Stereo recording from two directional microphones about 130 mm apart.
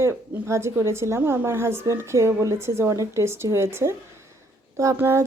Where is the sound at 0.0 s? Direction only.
20° right (ahead or behind).